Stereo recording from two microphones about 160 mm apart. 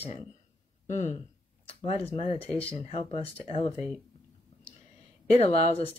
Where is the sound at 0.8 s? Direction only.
50° left (ahead or behind).